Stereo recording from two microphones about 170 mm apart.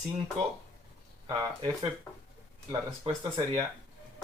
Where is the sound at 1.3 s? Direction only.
25° right (ahead or behind).